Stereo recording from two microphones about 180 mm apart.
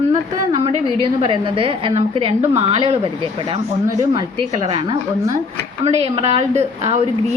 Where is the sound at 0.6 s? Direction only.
30° right (ahead or behind).